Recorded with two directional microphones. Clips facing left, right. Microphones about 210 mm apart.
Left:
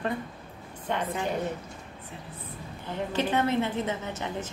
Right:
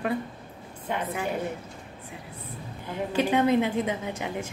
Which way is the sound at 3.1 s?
15° right (ahead or behind).